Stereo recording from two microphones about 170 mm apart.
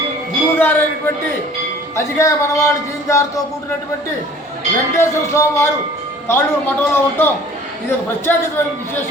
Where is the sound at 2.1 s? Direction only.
20° left (ahead or behind).